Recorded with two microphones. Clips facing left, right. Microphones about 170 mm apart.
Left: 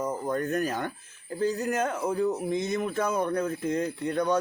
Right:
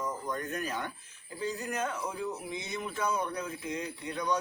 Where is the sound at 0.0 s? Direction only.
45° left (ahead or behind).